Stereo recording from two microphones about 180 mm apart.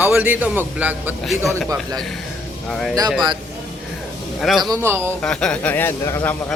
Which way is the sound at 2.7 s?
Centre (ahead or behind).